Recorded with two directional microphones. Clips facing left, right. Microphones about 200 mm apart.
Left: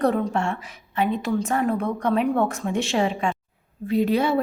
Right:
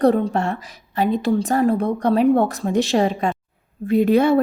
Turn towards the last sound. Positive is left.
turn(degrees=-50)  # may be behind; listen again after turning